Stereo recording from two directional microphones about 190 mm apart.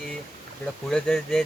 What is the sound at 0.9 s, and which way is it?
Speech, 5° left (ahead or behind).